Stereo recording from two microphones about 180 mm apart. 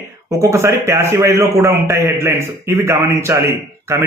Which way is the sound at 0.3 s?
15° right (ahead or behind).